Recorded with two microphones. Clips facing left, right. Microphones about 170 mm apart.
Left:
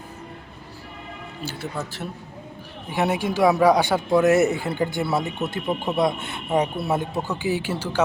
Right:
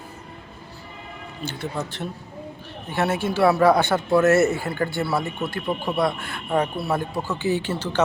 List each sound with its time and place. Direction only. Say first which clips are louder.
1.8 s speech: right 1 dB; 5° left (ahead or behind)